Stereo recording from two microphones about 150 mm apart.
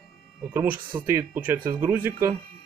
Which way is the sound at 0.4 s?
15° right (ahead or behind).